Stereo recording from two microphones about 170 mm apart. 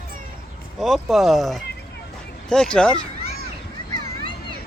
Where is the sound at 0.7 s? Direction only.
Centre (ahead or behind).